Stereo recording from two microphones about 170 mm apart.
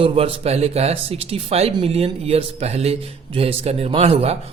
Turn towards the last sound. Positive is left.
turn(degrees=-35)  # may be behind; listen again after turning